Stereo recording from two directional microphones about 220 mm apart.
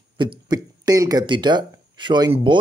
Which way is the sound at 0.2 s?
20° right (ahead or behind).